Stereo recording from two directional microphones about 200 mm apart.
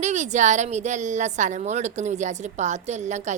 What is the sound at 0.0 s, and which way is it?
Speech, 35° right (ahead or behind).